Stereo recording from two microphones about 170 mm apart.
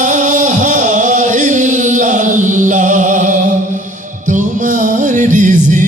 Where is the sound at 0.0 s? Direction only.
50° right (ahead or behind).